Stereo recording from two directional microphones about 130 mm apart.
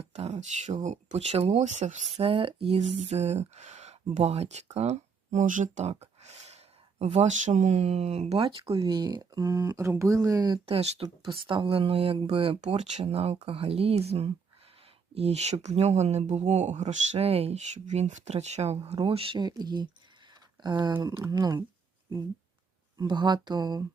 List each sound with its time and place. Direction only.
0.0 s speech: 55° right (ahead or behind)
2.2 s a sound: 40° right (ahead or behind)
7.0 s speech: 60° right (ahead or behind); by 10.6 s 30° right (ahead or behind)
10.7 s speech: 50° right (ahead or behind)
12.6 s speech: 60° right (ahead or behind); by 21.6 s 30° right (ahead or behind)
23.0 s speech: 35° right (ahead or behind)